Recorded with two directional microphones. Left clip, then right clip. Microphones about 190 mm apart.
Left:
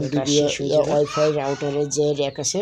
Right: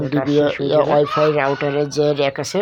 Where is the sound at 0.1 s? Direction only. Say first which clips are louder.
Right 3 dB; 10° left (ahead or behind).